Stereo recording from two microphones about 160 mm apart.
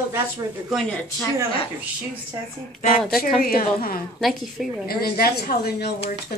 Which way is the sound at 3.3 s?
65° left (ahead or behind).